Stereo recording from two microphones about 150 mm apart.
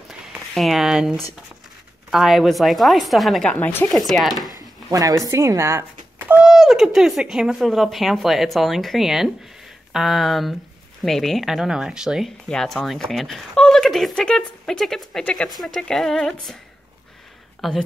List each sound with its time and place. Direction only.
0.3 s speech: centre (ahead or behind)
3.5 s speech: 10° left (ahead or behind)
3.9 s speech: centre (ahead or behind)
4.6 s speech: 25° right (ahead or behind); by 16.5 s 5° left (ahead or behind)
17.6 s speech: centre (ahead or behind)